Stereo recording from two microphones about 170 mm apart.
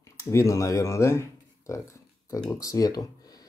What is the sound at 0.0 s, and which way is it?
Speech, 20° left (ahead or behind).